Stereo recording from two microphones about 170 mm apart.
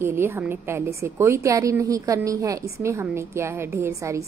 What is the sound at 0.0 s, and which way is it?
A woman's voice, 15° right (ahead or behind).